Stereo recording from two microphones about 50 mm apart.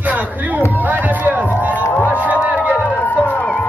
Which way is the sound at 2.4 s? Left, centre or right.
Right.